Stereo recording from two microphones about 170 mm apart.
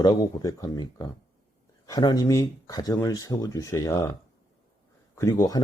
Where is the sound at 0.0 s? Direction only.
25° left (ahead or behind).